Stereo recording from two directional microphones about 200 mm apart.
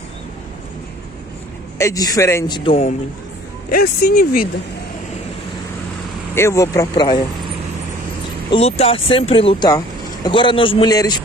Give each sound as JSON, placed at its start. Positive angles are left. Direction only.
{"t": 1.8, "sound": "a man's voice", "side_deg": 15}
{"t": 3.7, "sound": "speech", "side_deg": 50}
{"t": 6.3, "sound": "a man's voice", "side_deg": 15}
{"t": 8.5, "sound": "speech", "side_deg": 30}